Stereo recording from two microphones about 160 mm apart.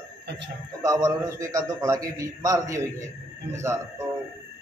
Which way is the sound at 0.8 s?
20° right (ahead or behind).